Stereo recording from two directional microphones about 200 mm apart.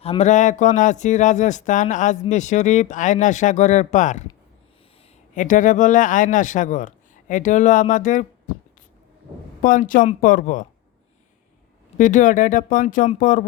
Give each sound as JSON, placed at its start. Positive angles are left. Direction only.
{"t": 0.0, "sound": "speech", "side_deg": 30}
{"t": 5.3, "sound": "speech", "side_deg": 40}
{"t": 9.6, "sound": "speech", "side_deg": 45}
{"t": 11.9, "sound": "speech", "side_deg": 40}